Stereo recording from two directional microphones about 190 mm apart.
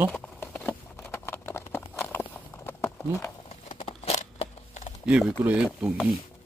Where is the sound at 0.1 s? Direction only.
5° left (ahead or behind).